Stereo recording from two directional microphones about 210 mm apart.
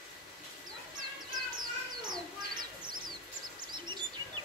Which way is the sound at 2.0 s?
20° right (ahead or behind).